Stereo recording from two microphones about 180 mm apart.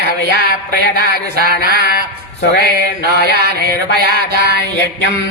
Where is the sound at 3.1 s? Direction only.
60° right (ahead or behind).